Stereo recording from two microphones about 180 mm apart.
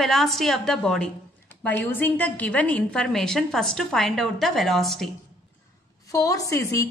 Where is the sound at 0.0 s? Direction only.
Centre (ahead or behind).